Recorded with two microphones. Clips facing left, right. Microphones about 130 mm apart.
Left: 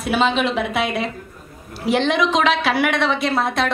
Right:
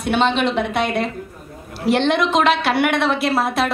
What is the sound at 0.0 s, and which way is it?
A woman's voice, centre (ahead or behind).